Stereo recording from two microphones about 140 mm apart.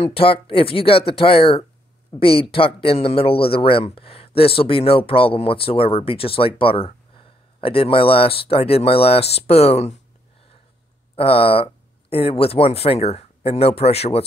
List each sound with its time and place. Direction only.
0.0 s a man's voice: 40° left (ahead or behind)
11.1 s speech: 40° left (ahead or behind)